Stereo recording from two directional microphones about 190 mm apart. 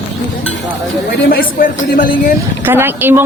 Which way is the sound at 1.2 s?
50° left (ahead or behind).